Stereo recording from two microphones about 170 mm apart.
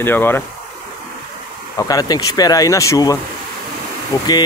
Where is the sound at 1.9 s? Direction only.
20° left (ahead or behind).